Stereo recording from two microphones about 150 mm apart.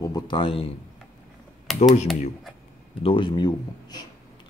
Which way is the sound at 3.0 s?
35° left (ahead or behind).